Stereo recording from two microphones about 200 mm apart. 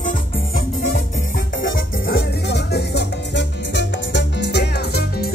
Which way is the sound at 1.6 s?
50° left (ahead or behind).